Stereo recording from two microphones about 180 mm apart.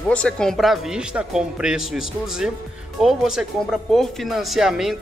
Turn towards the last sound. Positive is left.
turn(degrees=0)  # may be behind; listen again after turning